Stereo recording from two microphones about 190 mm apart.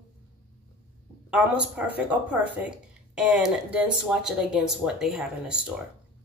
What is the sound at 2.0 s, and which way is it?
A woman's voice, 10° right (ahead or behind).